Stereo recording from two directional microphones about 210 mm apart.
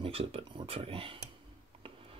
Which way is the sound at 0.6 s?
25° right (ahead or behind).